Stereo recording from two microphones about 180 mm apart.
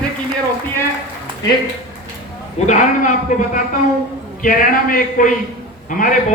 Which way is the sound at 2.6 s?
45° left (ahead or behind).